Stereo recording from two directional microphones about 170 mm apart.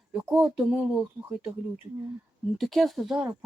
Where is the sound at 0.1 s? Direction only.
5° right (ahead or behind).